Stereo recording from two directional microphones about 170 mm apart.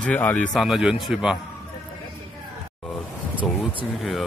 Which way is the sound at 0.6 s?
Centre (ahead or behind).